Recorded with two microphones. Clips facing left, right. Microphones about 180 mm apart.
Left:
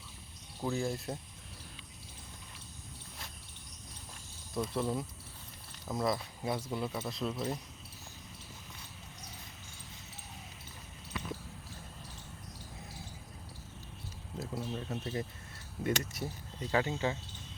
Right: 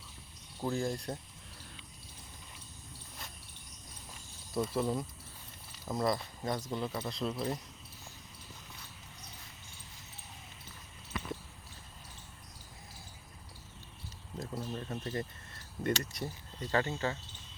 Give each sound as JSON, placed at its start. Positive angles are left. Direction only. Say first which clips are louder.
{"t": 0.6, "sound": "speech", "louder": "even", "side_deg": 5}
{"t": 4.5, "sound": "speech", "louder": "right 1 dB", "side_deg": -5}
{"t": 14.3, "sound": "speech", "louder": "left 1 dB", "side_deg": 5}